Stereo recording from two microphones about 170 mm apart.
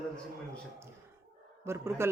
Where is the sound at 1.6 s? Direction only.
15° right (ahead or behind).